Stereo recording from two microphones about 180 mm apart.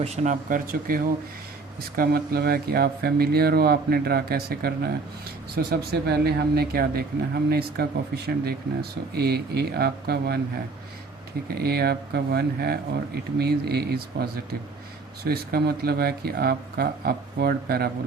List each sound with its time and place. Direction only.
0.0 s speech: 40° right (ahead or behind); by 10.4 s 60° right (ahead or behind)
11.4 s speech: 60° right (ahead or behind)